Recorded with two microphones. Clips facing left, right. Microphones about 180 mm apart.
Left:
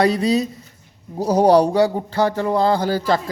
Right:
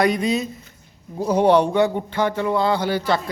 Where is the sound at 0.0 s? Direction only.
35° left (ahead or behind).